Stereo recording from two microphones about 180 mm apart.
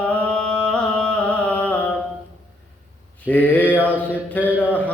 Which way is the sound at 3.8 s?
10° right (ahead or behind).